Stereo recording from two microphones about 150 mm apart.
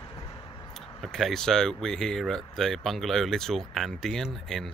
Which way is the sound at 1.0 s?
Centre (ahead or behind).